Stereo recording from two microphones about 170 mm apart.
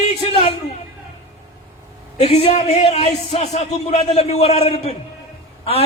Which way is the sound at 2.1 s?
35° left (ahead or behind).